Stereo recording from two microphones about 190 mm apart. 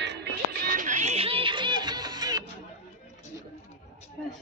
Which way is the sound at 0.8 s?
40° right (ahead or behind).